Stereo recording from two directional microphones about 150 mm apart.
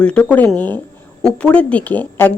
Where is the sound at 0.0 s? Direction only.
10° left (ahead or behind).